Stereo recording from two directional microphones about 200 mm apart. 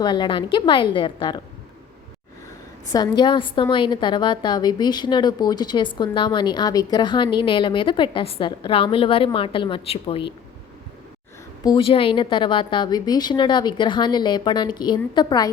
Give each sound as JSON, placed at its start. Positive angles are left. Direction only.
{"t": 0.0, "sound": "a woman's voice", "side_deg": 20}
{"t": 2.9, "sound": "a woman's voice", "side_deg": 20}
{"t": 11.6, "sound": "a woman's voice", "side_deg": 25}